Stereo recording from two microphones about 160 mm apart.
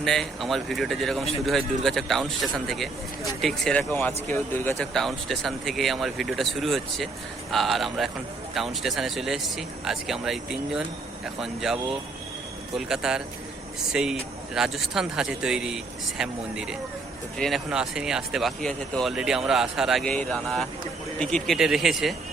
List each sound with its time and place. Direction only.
0.0 s speech: centre (ahead or behind)
4.9 s speech: centre (ahead or behind)